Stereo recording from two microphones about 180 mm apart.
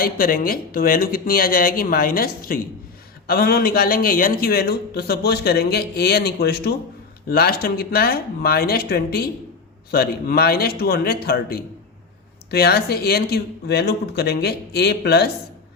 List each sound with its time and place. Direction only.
0.0 s speech: 55° left (ahead or behind)